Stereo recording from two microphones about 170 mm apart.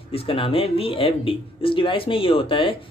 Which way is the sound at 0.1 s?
35° left (ahead or behind).